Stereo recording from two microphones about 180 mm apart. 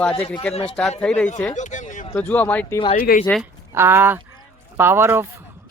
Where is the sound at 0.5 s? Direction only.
30° left (ahead or behind).